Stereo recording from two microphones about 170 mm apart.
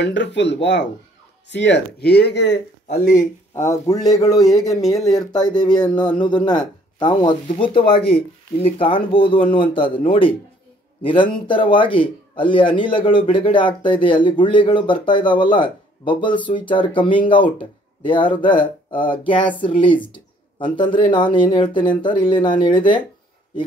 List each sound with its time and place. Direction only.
0.0 s speech: 90° left
3.1 s speech: 50° left (ahead or behind)
3.6 s a man's voice: 20° left (ahead or behind)
18.3 s a man's voice: 30° left (ahead or behind)